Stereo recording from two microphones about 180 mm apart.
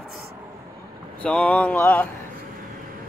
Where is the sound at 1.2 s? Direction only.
5° left (ahead or behind).